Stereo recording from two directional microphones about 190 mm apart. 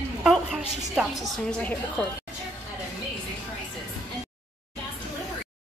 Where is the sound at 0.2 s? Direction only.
Centre (ahead or behind).